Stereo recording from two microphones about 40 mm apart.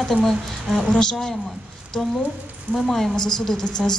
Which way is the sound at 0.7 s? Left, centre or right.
Centre.